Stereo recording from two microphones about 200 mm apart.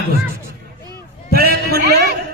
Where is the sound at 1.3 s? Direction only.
50° right (ahead or behind).